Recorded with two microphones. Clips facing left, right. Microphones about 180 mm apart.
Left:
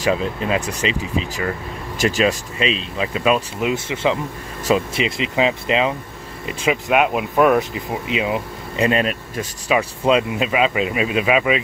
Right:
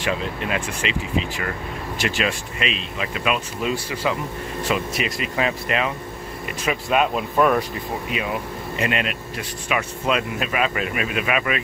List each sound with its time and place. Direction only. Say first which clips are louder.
0.0 s speech: left 5 dB; 35° left (ahead or behind)
2.0 s speech: left 7 dB; 40° left (ahead or behind)
3.6 s speech: left 3 dB; 20° left (ahead or behind)
8.9 s speech: left 5 dB; 35° left (ahead or behind)